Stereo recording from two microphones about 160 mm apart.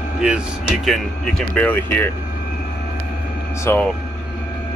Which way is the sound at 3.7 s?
15° left (ahead or behind).